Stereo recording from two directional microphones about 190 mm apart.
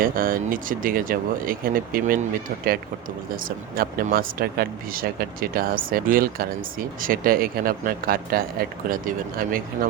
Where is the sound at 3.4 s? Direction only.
50° right (ahead or behind).